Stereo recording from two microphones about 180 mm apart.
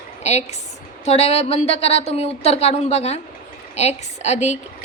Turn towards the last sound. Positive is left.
turn(degrees=40)  # may be behind; listen again after turning